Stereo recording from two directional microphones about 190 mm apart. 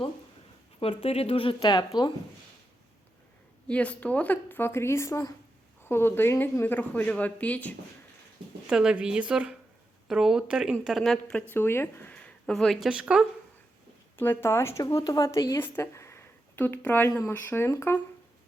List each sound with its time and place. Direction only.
0.8 s speech: 30° left (ahead or behind)
3.7 s speech: 5° left (ahead or behind)
8.6 s speech: 5° right (ahead or behind)
14.2 s speech: 10° left (ahead or behind)